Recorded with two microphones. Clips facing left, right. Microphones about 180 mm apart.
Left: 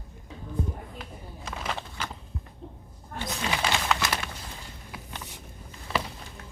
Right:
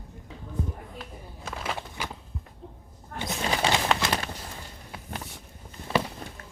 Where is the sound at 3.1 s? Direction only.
20° right (ahead or behind).